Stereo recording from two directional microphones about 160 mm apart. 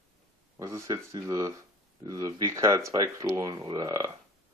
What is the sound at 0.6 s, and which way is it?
Speech, 20° right (ahead or behind).